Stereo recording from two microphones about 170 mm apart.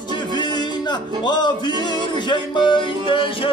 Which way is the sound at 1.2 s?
25° left (ahead or behind).